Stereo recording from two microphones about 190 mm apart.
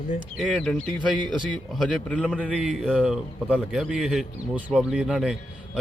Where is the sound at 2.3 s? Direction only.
5° right (ahead or behind).